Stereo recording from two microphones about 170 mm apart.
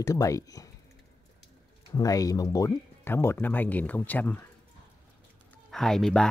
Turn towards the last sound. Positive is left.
turn(degrees=5)  # may be behind; listen again after turning